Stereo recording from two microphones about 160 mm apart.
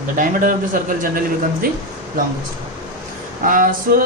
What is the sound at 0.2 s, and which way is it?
Speech, 55° right (ahead or behind).